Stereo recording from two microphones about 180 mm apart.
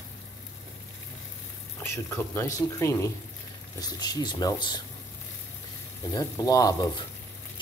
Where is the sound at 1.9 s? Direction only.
15° left (ahead or behind).